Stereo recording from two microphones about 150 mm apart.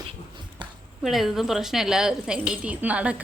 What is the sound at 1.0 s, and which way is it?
A woman's voice, centre (ahead or behind).